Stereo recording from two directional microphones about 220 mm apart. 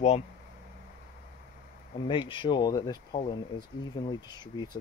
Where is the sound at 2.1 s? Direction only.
20° left (ahead or behind).